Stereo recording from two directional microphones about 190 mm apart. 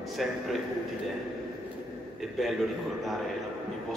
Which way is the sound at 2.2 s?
Centre (ahead or behind).